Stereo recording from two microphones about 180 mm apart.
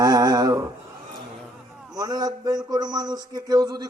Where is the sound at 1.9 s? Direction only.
20° right (ahead or behind).